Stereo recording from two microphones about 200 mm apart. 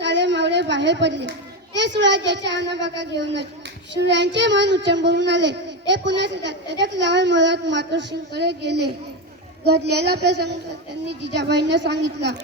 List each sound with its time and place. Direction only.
0.0 s a child's voice: 60° right (ahead or behind)